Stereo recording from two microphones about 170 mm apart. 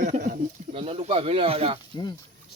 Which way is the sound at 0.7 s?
35° right (ahead or behind).